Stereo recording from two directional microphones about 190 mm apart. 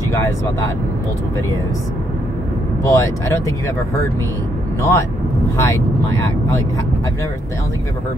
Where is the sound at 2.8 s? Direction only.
15° left (ahead or behind).